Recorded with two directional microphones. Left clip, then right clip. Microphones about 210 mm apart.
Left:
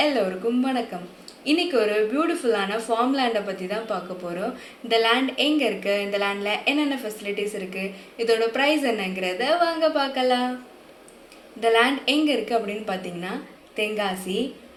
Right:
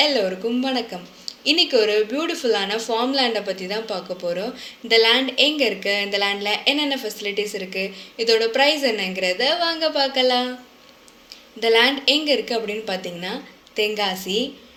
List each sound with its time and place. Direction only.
0.6 s a woman's voice: 40° right (ahead or behind)
11.6 s a woman's voice: 40° right (ahead or behind)